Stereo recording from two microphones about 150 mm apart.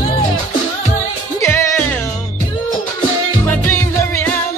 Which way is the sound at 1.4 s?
20° left (ahead or behind).